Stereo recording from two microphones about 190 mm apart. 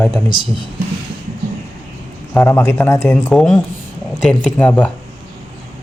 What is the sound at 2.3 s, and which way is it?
Speech, 10° left (ahead or behind).